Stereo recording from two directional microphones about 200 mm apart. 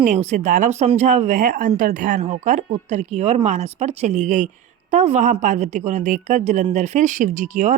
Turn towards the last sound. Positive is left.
turn(degrees=-40)  # may be behind; listen again after turning